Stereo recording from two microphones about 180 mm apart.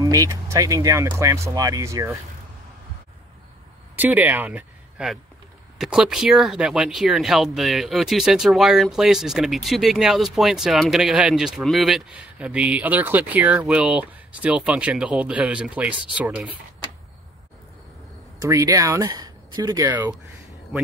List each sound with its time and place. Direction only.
0.0 s speech: 20° right (ahead or behind)
3.9 s speech: 10° right (ahead or behind)
18.4 s speech: 20° right (ahead or behind)